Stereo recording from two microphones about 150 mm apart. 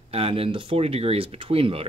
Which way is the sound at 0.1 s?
40° right (ahead or behind).